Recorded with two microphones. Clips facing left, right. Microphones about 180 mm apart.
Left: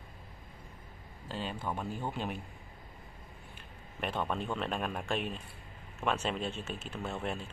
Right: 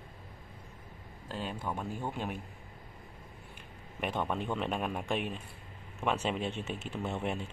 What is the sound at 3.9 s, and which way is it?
A man's voice, 10° right (ahead or behind).